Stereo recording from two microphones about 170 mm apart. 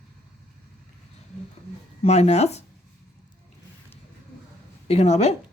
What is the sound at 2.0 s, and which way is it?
Speech, 40° left (ahead or behind).